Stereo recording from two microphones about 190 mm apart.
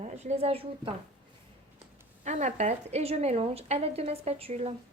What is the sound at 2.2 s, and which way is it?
A woman's voice, 40° right (ahead or behind).